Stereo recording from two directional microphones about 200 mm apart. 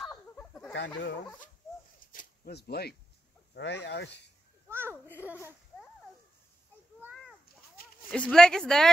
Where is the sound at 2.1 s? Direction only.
50° left (ahead or behind).